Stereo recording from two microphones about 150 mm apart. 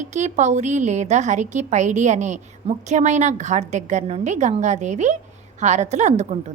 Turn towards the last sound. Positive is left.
turn(degrees=-50)  # may be behind; listen again after turning